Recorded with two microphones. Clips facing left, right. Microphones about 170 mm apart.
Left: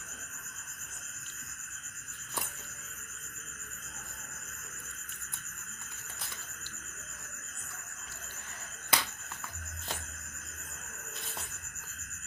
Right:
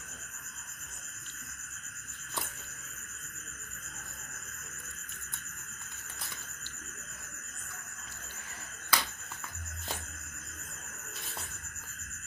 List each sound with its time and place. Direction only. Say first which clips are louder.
8.9 s finger snapping: even; 25° left (ahead or behind)